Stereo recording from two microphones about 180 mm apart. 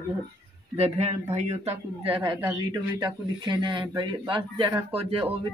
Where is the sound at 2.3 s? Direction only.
10° right (ahead or behind).